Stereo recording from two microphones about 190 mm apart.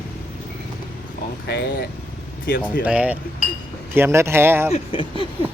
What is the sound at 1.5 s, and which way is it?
Speech, 60° left (ahead or behind).